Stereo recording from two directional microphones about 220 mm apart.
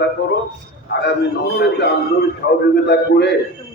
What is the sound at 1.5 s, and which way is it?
A man's voice, 50° left (ahead or behind).